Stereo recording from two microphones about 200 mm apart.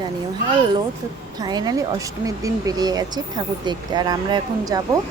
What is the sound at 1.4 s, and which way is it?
Speech, 20° right (ahead or behind).